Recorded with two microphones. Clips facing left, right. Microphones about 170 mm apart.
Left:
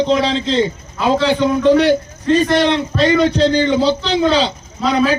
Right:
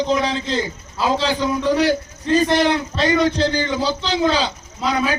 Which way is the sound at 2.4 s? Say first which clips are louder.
Even; 25° left (ahead or behind).